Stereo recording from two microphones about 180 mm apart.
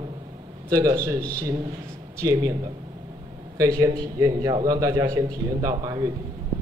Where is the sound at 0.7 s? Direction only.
20° right (ahead or behind).